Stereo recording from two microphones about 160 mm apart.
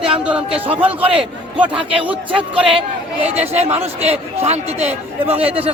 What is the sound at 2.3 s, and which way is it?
A man's voice, 35° right (ahead or behind).